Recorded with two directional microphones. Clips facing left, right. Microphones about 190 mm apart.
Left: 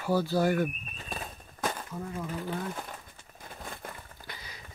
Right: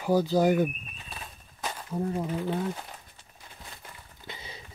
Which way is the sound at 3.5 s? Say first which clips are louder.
Left 7 dB; 50° left (ahead or behind).